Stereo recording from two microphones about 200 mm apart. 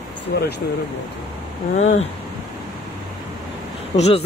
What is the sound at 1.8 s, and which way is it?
Speech, 35° left (ahead or behind).